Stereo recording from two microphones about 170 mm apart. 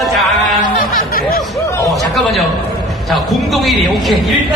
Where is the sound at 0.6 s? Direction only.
60° left (ahead or behind).